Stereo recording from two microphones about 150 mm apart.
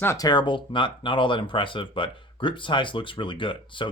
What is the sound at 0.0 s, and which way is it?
Speech, 20° left (ahead or behind).